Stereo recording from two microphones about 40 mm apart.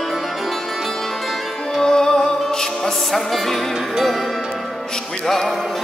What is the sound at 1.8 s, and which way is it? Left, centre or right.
Music, centre.